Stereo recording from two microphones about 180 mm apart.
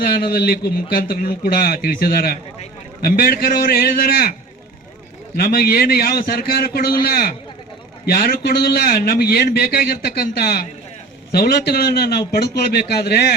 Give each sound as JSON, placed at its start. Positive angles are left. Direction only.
{"t": 0.0, "sound": "a man's voice", "side_deg": 55}
{"t": 5.4, "sound": "a man's voice", "side_deg": 55}